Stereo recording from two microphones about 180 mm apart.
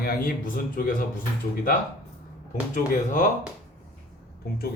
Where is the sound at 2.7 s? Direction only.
45° left (ahead or behind).